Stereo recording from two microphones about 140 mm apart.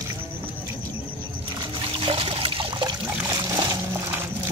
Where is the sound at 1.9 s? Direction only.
40° right (ahead or behind).